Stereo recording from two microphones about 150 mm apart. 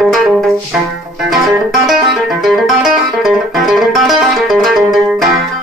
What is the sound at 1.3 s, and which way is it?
Music, centre (ahead or behind).